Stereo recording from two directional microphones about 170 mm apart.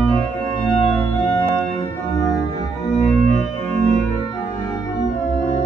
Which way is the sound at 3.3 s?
40° right (ahead or behind).